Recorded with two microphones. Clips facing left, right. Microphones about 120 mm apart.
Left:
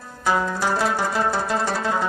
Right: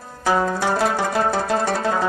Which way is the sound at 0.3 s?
60° right (ahead or behind).